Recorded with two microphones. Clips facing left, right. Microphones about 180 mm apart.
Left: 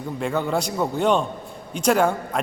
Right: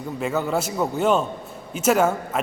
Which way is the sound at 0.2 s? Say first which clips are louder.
Even; 5° right (ahead or behind).